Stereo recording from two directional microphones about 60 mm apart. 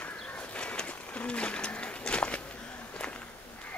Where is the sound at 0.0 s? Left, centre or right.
Left.